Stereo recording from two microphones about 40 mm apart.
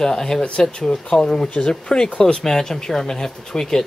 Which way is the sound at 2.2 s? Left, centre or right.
Centre.